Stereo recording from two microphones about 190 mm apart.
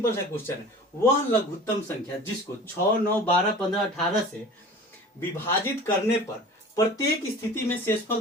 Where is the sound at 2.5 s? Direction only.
15° left (ahead or behind).